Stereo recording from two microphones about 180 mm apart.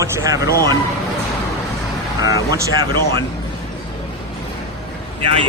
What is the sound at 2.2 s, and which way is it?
Speech, 20° right (ahead or behind).